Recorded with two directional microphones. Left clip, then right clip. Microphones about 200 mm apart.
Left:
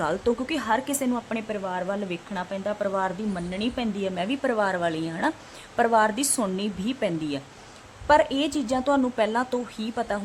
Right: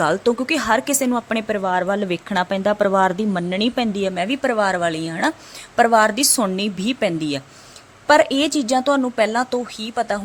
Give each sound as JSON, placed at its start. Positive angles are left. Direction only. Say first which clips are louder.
{"t": 0.0, "sound": "a woman's voice", "louder": "right 7 dB", "side_deg": -20}